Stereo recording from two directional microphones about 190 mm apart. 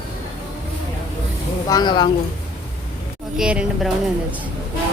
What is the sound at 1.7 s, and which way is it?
Speech, 20° left (ahead or behind).